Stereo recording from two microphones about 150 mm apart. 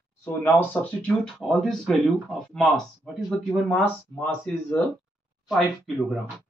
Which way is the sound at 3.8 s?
15° left (ahead or behind).